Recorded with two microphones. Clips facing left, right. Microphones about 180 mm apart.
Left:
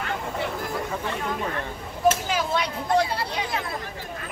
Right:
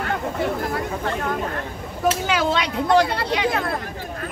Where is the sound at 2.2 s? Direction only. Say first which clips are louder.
Right 4 dB; 75° right (ahead or behind); by 3.8 s 60° right (ahead or behind).